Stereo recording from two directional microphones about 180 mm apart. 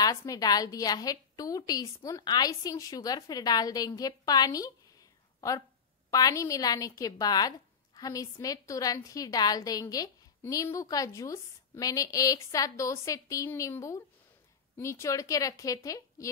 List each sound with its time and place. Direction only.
0.0 s a woman's voice: 20° left (ahead or behind)
6.0 s a woman's voice: 20° left (ahead or behind)